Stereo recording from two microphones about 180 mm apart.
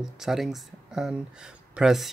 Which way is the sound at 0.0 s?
Centre (ahead or behind).